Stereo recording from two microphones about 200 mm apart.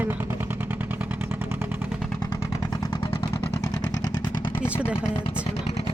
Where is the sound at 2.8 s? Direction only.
20° left (ahead or behind).